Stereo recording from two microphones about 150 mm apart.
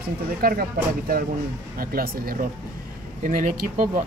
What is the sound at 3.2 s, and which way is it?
Speech, 60° right (ahead or behind).